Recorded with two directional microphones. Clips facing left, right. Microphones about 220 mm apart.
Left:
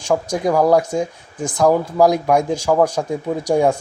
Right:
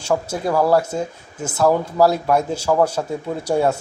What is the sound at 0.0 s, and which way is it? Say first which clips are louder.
Speech: left 3 dB; 15° left (ahead or behind).